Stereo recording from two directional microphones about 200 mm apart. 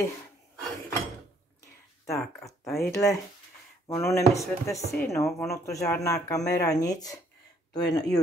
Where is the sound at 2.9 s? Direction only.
15° left (ahead or behind).